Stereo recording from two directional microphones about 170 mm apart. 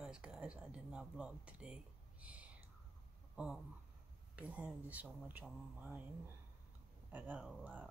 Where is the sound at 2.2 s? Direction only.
10° right (ahead or behind).